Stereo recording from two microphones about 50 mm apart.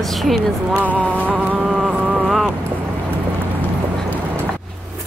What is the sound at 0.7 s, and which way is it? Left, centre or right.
Speech, right.